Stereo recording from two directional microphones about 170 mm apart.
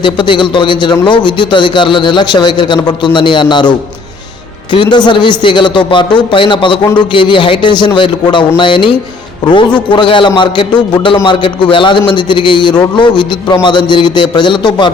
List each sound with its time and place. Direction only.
0.0 s a man's voice: 30° left (ahead or behind)
9.9 s a man's voice: 30° left (ahead or behind)